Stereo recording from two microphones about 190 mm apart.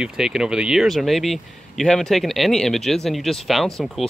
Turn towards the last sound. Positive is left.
turn(degrees=0)  # may be behind; listen again after turning